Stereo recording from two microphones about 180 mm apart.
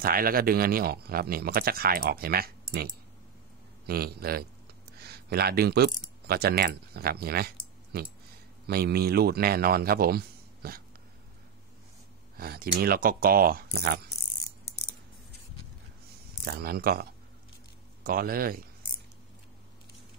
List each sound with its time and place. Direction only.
0.0 s speech: 55° right (ahead or behind)
12.4 s speech: 55° right (ahead or behind)
16.4 s speech: 60° right (ahead or behind)